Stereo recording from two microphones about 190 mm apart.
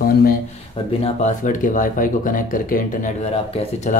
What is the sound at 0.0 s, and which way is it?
Speech, 50° left (ahead or behind).